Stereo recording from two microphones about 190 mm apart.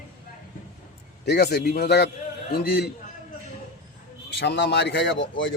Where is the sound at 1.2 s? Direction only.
60° left (ahead or behind).